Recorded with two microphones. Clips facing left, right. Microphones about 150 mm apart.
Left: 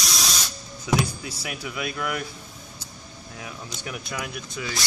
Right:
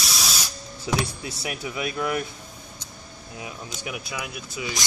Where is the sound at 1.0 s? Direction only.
25° right (ahead or behind).